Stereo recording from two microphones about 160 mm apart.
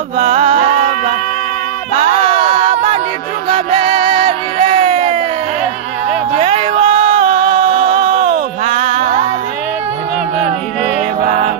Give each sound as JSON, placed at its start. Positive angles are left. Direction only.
{"t": 0.2, "sound": "music", "side_deg": -40}
{"t": 2.0, "sound": "music", "side_deg": -40}
{"t": 6.3, "sound": "music", "side_deg": -40}
{"t": 11.2, "sound": "music", "side_deg": -50}